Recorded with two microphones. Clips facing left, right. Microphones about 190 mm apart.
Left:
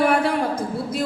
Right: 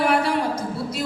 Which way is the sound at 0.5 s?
50° left (ahead or behind).